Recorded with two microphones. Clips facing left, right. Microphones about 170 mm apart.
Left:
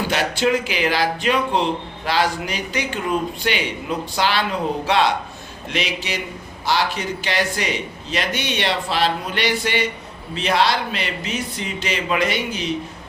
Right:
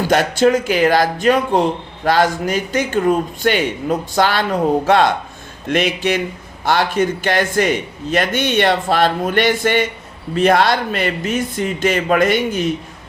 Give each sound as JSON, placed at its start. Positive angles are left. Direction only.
{"t": 0.1, "sound": "a man's voice", "side_deg": -45}